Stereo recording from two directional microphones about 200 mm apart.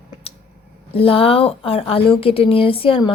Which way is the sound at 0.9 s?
30° left (ahead or behind).